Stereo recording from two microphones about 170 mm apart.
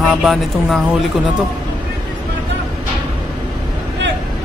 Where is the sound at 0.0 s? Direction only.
Centre (ahead or behind).